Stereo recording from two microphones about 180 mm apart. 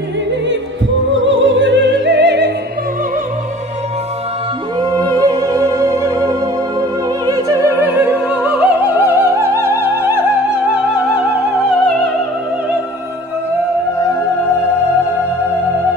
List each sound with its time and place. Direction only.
1.1 s opera: 90° right; by 2.5 s 70° right (ahead or behind)
4.7 s music: 20° right (ahead or behind)
7.2 s opera: 15° right (ahead or behind)